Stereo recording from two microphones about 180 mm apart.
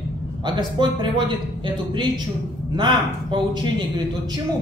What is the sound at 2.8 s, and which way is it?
Speech, 25° right (ahead or behind).